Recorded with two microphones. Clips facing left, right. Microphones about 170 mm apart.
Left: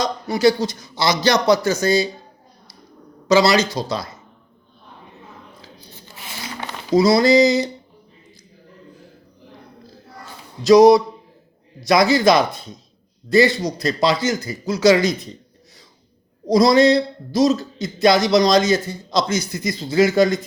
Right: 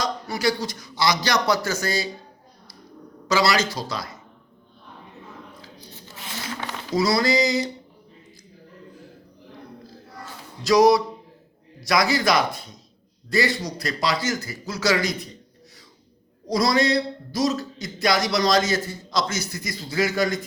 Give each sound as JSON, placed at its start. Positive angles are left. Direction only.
{"t": 0.0, "sound": "a man's voice", "side_deg": 25}
{"t": 3.2, "sound": "a man's voice", "side_deg": 20}
{"t": 6.1, "sound": "a sound", "side_deg": 5}
{"t": 6.9, "sound": "a man's voice", "side_deg": 20}
{"t": 10.6, "sound": "a man's voice", "side_deg": 20}
{"t": 16.5, "sound": "a man's voice", "side_deg": 20}